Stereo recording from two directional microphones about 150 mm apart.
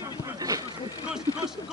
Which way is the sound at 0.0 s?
25° right (ahead or behind).